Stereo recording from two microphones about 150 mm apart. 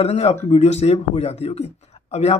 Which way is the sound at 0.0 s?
45° left (ahead or behind).